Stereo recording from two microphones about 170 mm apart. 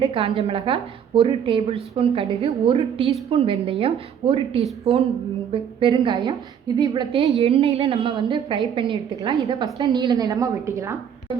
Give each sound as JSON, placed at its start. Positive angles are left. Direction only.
{"t": 0.0, "sound": "a woman's voice", "side_deg": -35}